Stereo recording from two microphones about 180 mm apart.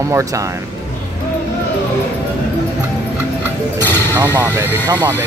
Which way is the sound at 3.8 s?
10° left (ahead or behind).